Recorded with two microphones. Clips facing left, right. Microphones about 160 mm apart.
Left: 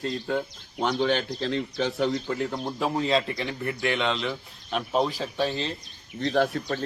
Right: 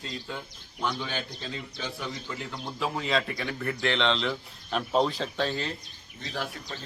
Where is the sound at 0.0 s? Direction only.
55° left (ahead or behind); by 2.1 s 70° left (ahead or behind).